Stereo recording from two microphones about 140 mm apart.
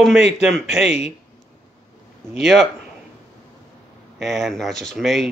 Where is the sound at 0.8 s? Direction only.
50° left (ahead or behind).